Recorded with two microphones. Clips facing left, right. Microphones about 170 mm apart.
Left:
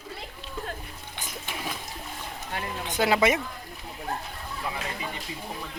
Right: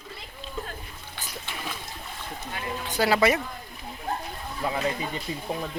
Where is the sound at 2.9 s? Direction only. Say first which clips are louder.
Right 1 dB; 20° left (ahead or behind).